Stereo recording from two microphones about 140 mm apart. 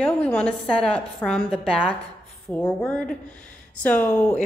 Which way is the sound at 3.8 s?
10° left (ahead or behind).